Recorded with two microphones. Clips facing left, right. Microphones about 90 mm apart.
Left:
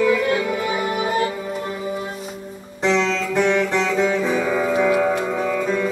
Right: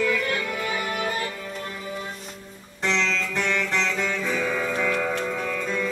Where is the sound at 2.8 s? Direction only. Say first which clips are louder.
Left 6 dB; 10° left (ahead or behind).